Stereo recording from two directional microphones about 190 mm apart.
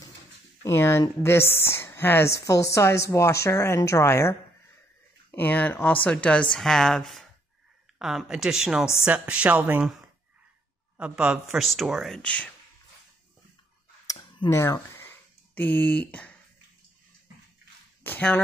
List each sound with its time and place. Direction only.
0.7 s a woman's voice: 15° left (ahead or behind); by 9.9 s 5° right (ahead or behind)
11.0 s speech: 5° right (ahead or behind)
14.5 s a sound: 15° left (ahead or behind)
18.0 s speech: 10° left (ahead or behind)